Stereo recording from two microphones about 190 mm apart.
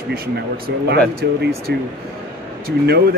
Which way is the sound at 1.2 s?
60° right (ahead or behind).